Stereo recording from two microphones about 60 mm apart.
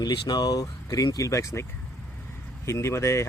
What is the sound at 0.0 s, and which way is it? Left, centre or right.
Speech, left.